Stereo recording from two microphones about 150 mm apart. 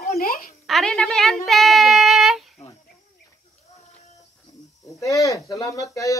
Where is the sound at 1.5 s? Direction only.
Centre (ahead or behind).